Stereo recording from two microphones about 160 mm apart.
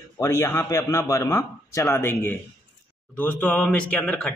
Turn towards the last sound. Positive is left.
turn(degrees=5)  # may be behind; listen again after turning